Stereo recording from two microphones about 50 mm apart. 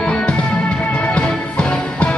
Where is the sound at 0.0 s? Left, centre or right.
Centre.